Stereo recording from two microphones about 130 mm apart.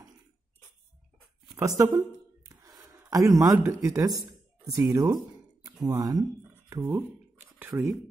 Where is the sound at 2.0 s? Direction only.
25° right (ahead or behind).